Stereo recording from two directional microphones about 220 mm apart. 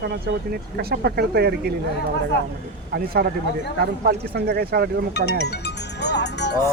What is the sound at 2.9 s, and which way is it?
Speech, 45° right (ahead or behind).